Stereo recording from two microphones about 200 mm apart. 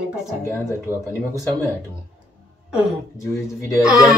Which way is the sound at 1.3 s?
15° left (ahead or behind).